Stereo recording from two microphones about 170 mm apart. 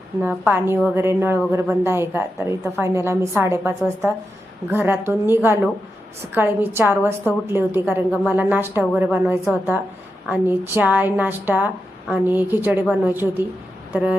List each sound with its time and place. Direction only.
0.2 s a woman's voice: 10° right (ahead or behind)